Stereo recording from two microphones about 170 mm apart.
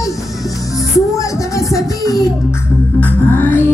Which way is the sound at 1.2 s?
20° left (ahead or behind).